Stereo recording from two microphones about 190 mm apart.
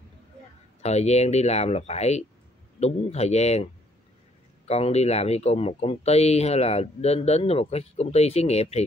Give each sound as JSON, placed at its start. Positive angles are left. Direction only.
{"t": 0.8, "sound": "speech", "side_deg": 35}
{"t": 4.6, "sound": "speech", "side_deg": 35}